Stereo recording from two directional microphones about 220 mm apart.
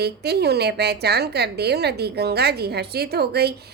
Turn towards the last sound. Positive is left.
turn(degrees=-45)  # may be behind; listen again after turning